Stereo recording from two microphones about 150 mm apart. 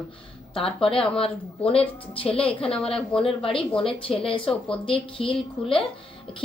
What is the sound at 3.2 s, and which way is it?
Speech, 40° left (ahead or behind).